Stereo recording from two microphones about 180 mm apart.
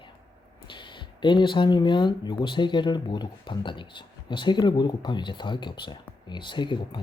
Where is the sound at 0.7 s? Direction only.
25° left (ahead or behind).